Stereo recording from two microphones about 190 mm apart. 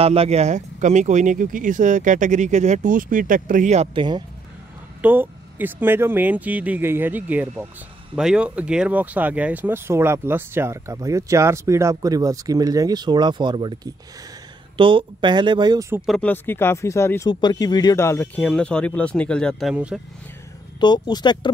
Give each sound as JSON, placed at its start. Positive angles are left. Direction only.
{"t": 0.0, "sound": "speech", "side_deg": -30}
{"t": 5.0, "sound": "speech", "side_deg": -10}
{"t": 14.8, "sound": "speech", "side_deg": -25}
{"t": 16.1, "sound": "speech", "side_deg": 5}
{"t": 19.7, "sound": "speech", "side_deg": -5}
{"t": 20.8, "sound": "speech", "side_deg": 25}